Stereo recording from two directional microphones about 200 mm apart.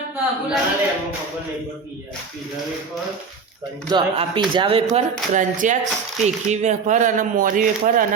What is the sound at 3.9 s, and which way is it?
Speech, 25° right (ahead or behind).